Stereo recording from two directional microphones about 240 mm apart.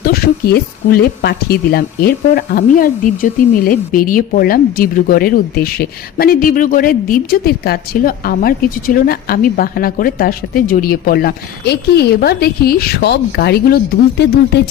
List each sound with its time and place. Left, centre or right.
0.0 s speech: left